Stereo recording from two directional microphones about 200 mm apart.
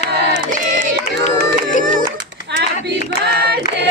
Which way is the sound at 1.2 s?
40° left (ahead or behind).